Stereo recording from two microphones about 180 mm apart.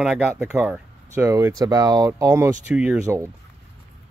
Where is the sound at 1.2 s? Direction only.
15° right (ahead or behind).